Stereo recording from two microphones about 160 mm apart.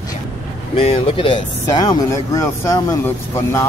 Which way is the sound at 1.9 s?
20° left (ahead or behind).